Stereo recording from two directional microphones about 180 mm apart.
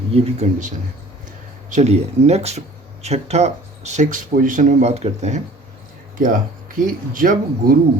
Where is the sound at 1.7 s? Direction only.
40° right (ahead or behind).